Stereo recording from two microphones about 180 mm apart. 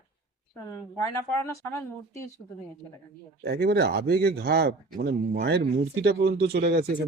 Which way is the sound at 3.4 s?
60° right (ahead or behind).